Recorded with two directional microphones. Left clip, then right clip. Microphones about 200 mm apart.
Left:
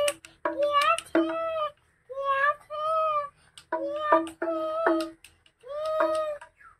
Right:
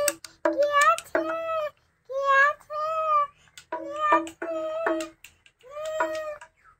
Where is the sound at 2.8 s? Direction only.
20° right (ahead or behind).